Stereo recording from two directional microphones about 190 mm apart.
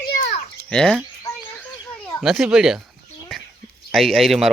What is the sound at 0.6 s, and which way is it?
Speech, 5° left (ahead or behind).